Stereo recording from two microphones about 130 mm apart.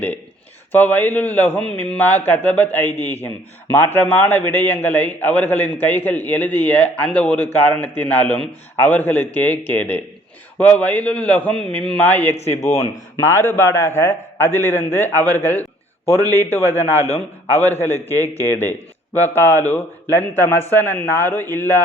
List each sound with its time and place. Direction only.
0.7 s a man's voice: 15° left (ahead or behind)
12.4 s a man's voice: 60° left (ahead or behind)
13.1 s a man's voice: 20° left (ahead or behind)
17.1 s a man's voice: 55° left (ahead or behind)
18.3 s a man's voice: 15° left (ahead or behind)